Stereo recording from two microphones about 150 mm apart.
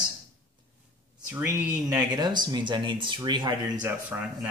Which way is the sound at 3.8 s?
10° right (ahead or behind).